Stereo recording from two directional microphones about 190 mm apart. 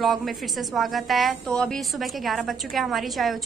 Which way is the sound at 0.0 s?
Centre (ahead or behind).